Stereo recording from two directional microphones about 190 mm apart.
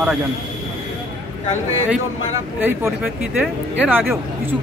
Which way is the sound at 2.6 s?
10° right (ahead or behind).